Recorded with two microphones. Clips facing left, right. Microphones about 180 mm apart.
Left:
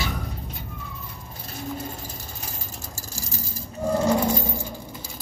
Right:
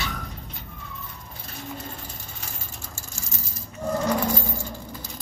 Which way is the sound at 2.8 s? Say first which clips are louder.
Left 3 dB; 35° left (ahead or behind).